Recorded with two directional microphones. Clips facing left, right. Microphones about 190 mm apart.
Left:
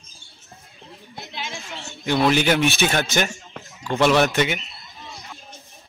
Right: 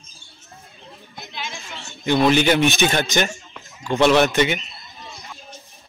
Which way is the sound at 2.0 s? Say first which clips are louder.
Right 2 dB; 5° left (ahead or behind).